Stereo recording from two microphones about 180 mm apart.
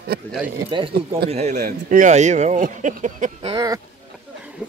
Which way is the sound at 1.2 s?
35° right (ahead or behind).